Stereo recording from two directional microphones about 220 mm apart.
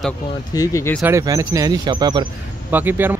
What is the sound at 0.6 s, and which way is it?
Speech, 15° left (ahead or behind).